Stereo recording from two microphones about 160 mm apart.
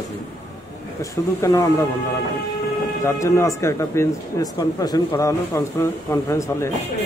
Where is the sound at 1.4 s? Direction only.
20° left (ahead or behind).